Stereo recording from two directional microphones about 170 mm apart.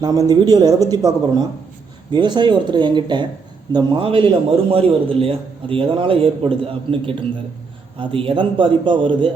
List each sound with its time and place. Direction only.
0.0 s a man's voice: 20° right (ahead or behind)